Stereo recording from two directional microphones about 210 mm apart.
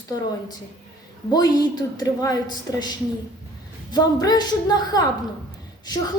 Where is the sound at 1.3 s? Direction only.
20° left (ahead or behind).